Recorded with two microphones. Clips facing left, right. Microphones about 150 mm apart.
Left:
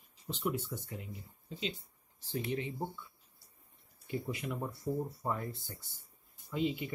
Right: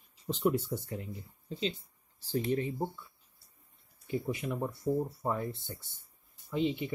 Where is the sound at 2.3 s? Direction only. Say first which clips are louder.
Right 5 dB; 35° right (ahead or behind).